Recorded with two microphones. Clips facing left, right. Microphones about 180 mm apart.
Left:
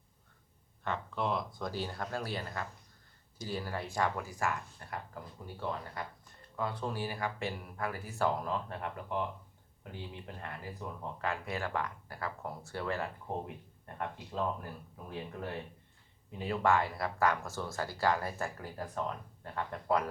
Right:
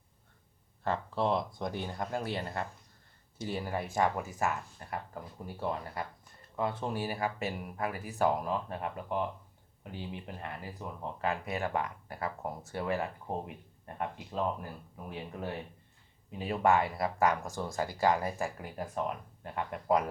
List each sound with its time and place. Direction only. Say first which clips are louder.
0.9 s speech: right 4 dB; 30° right (ahead or behind)